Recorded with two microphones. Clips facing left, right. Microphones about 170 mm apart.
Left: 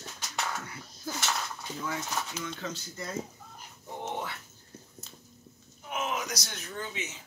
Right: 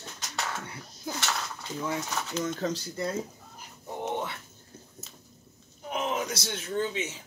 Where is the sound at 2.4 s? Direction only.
40° right (ahead or behind).